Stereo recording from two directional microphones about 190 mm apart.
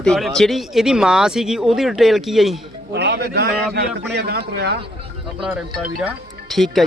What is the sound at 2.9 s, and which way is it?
A man's voice, 65° right (ahead or behind).